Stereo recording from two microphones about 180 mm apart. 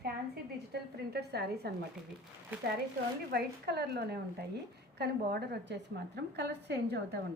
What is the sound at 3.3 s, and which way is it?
A woman's voice, 65° right (ahead or behind).